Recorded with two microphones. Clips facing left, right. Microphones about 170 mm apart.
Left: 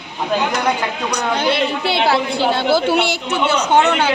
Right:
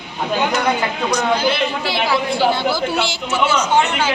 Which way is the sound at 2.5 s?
60° left (ahead or behind).